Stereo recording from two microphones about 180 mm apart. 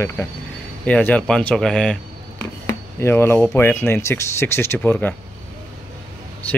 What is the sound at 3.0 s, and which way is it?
Speech, 15° left (ahead or behind).